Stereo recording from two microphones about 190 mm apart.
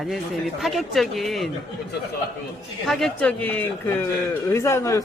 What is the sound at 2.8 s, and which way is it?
A man's voice, centre (ahead or behind).